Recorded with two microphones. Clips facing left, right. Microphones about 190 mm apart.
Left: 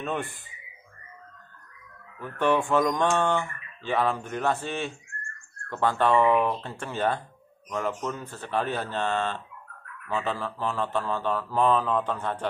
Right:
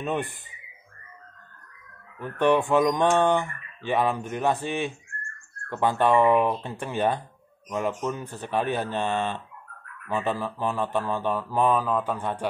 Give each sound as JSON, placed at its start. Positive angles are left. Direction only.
{"t": 0.0, "sound": "speech", "side_deg": -20}
{"t": 2.1, "sound": "speech", "side_deg": -20}